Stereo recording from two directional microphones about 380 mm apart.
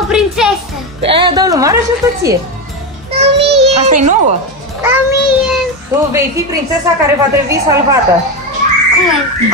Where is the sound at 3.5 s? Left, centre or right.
Centre.